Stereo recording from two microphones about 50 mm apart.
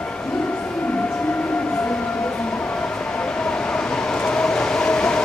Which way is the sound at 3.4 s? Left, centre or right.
Centre.